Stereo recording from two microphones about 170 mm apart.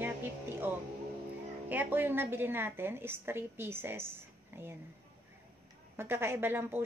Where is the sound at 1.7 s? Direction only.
10° right (ahead or behind).